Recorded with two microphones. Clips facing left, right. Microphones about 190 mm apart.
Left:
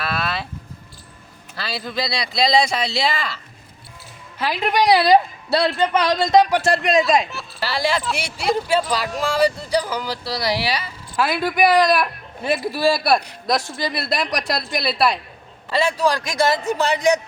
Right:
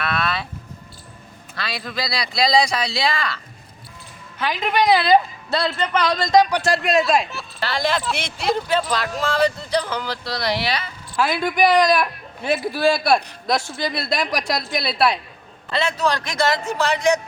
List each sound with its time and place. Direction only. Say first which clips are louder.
0.1 s music: right 1 dB; centre (ahead or behind)
1.5 s a sound: left 1 dB; 30° left (ahead or behind)
2.0 s speech: left 2 dB; 25° left (ahead or behind)
2.2 s speech: even; centre (ahead or behind)
4.4 s speech: left 1 dB; 10° left (ahead or behind)
5.0 s speech: left 1 dB; 35° left (ahead or behind)
5.9 s speech: right 1 dB; 5° left (ahead or behind)
15.7 s speech: left 2 dB; 10° left (ahead or behind)